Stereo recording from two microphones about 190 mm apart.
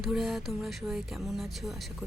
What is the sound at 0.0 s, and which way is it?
Speech, centre (ahead or behind).